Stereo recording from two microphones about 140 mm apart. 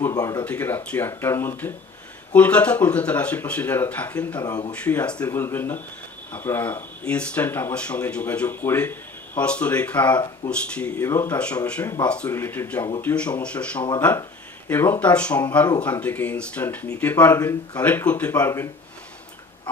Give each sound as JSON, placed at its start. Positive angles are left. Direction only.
{"t": 0.0, "sound": "speech", "side_deg": 25}
{"t": 0.4, "sound": "speech", "side_deg": 15}
{"t": 4.4, "sound": "speech", "side_deg": 25}
{"t": 4.7, "sound": "speech", "side_deg": 10}